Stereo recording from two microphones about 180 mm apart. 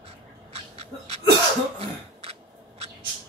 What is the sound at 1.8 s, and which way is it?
Throat clearing, 35° right (ahead or behind).